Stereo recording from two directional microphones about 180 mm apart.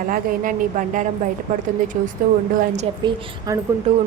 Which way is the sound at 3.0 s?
20° right (ahead or behind).